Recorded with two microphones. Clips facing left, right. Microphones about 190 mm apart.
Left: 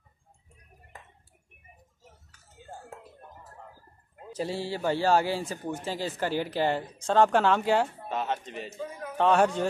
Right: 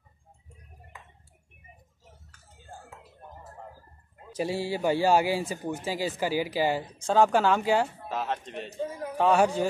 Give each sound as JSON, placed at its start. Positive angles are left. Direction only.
{"t": 4.3, "sound": "speech", "side_deg": -15}
{"t": 8.7, "sound": "a sound", "side_deg": -30}
{"t": 9.1, "sound": "speech", "side_deg": -5}